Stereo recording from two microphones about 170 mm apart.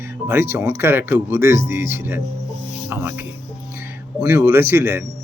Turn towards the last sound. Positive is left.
turn(degrees=-15)  # may be behind; listen again after turning